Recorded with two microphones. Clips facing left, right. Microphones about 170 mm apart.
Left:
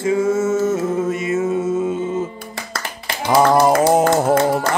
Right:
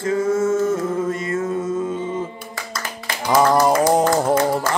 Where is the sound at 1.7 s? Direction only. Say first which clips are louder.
Left 3 dB; 10° left (ahead or behind).